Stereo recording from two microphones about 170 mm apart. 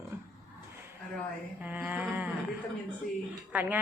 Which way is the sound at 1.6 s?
10° right (ahead or behind).